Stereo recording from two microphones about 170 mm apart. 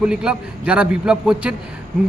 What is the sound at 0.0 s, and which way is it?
A man's voice, 5° right (ahead or behind).